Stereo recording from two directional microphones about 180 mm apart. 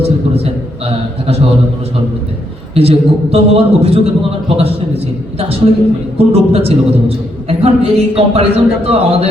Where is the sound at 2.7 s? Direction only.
35° right (ahead or behind).